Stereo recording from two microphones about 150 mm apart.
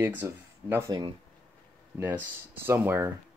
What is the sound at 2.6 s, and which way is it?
Speech, 15° right (ahead or behind).